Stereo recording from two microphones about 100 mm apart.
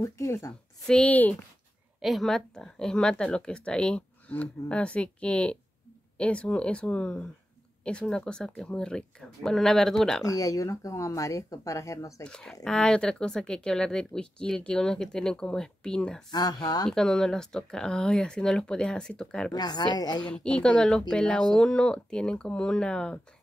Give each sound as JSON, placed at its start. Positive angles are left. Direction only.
{"t": 0.0, "sound": "speech", "side_deg": 30}
{"t": 0.8, "sound": "speech", "side_deg": 10}
{"t": 2.0, "sound": "speech", "side_deg": 0}
{"t": 10.2, "sound": "speech", "side_deg": 35}
{"t": 12.2, "sound": "speech", "side_deg": 10}
{"t": 16.3, "sound": "speech", "side_deg": 45}
{"t": 16.9, "sound": "speech", "side_deg": 5}
{"t": 19.5, "sound": "speech", "side_deg": 45}
{"t": 20.2, "sound": "speech", "side_deg": 10}